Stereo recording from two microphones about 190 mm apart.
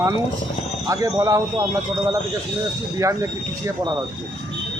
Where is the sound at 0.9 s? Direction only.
15° right (ahead or behind).